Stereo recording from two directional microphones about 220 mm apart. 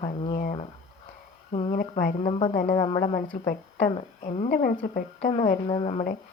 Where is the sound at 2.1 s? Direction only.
20° left (ahead or behind).